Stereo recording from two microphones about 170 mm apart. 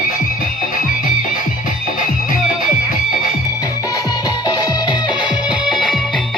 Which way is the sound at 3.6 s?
20° left (ahead or behind).